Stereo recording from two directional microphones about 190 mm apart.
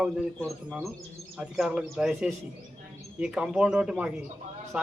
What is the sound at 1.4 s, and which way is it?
A man's voice, 5° right (ahead or behind).